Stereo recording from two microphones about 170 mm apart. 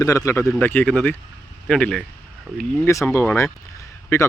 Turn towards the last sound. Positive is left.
turn(degrees=15)  # may be behind; listen again after turning